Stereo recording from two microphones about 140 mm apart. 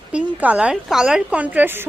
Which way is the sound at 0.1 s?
10° right (ahead or behind).